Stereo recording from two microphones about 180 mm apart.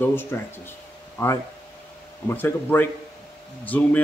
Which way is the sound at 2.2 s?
10° left (ahead or behind).